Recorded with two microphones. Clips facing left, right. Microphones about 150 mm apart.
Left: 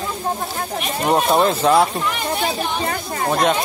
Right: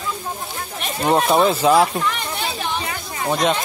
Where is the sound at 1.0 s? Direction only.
Centre (ahead or behind).